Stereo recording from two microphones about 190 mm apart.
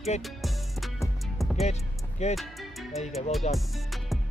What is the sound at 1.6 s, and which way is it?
Music, 35° left (ahead or behind).